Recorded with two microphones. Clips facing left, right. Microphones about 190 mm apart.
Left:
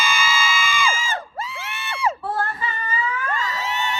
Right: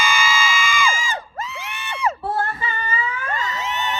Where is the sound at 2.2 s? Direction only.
25° right (ahead or behind).